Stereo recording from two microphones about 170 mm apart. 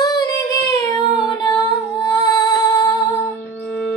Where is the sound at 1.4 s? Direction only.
20° left (ahead or behind).